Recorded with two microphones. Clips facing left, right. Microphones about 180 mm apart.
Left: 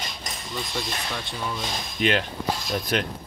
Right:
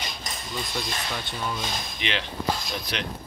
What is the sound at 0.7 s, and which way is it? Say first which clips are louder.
Speech: left 1 dB; centre (ahead or behind).